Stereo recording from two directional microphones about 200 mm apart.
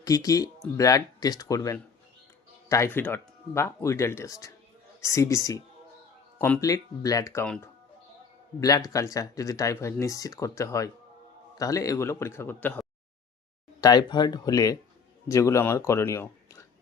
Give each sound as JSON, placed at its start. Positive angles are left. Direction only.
{"t": 0.0, "sound": "speech", "side_deg": 20}
{"t": 7.4, "sound": "speech", "side_deg": 5}
{"t": 8.9, "sound": "speech", "side_deg": 15}
{"t": 13.8, "sound": "speech", "side_deg": 20}